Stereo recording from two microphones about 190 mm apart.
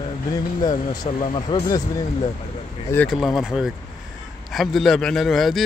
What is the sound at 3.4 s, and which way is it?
Speech, 5° right (ahead or behind).